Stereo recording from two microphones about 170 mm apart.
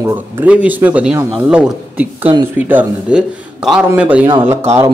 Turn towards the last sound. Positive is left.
turn(degrees=-15)  # may be behind; listen again after turning